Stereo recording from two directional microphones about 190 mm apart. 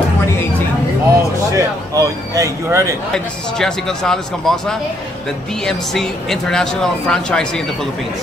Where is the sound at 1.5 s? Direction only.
15° right (ahead or behind).